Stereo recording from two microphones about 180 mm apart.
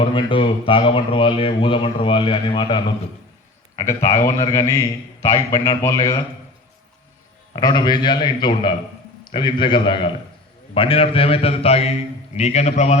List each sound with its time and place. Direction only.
0.0 s a man's voice: 25° left (ahead or behind)
7.5 s a man's voice: 25° left (ahead or behind); by 13.0 s 40° left (ahead or behind)